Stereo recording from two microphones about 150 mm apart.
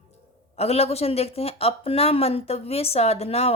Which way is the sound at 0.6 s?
45° left (ahead or behind).